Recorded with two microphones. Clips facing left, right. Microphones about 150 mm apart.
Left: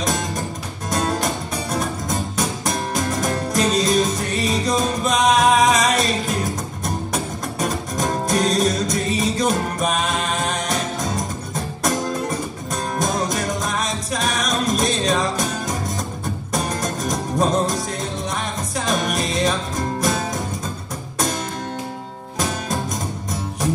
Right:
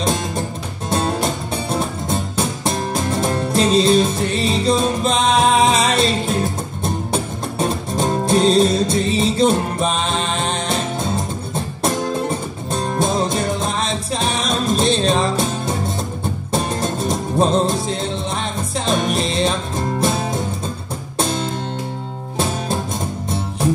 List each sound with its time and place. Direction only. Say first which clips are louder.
0.8 s music: right 2 dB; 25° right (ahead or behind)
21.2 s music: right 3 dB; 30° right (ahead or behind)